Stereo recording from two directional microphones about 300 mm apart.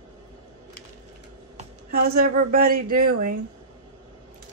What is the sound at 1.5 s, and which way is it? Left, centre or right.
Speech, right.